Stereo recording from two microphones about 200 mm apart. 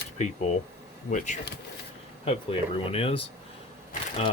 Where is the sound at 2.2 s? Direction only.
25° left (ahead or behind).